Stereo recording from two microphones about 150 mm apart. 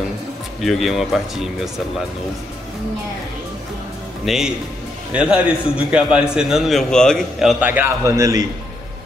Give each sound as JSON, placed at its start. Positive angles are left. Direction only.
{"t": 0.6, "sound": "a man's voice", "side_deg": 0}
{"t": 4.3, "sound": "a man's voice", "side_deg": -5}
{"t": 7.6, "sound": "a man's voice", "side_deg": -15}